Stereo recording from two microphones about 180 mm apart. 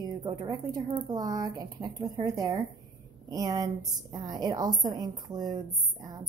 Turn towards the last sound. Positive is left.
turn(degrees=-20)  # may be behind; listen again after turning